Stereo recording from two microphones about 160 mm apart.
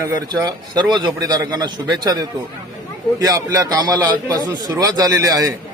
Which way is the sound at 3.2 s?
20° right (ahead or behind).